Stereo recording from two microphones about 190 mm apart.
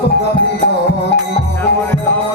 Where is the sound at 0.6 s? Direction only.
60° left (ahead or behind).